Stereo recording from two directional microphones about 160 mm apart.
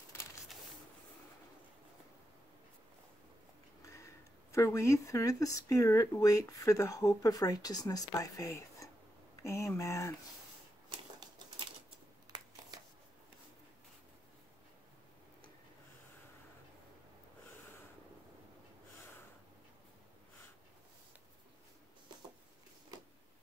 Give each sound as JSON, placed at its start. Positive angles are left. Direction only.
{"t": 3.8, "sound": "speech", "side_deg": 20}
{"t": 10.9, "sound": "typewriter", "side_deg": -25}
{"t": 12.3, "sound": "a sound", "side_deg": -25}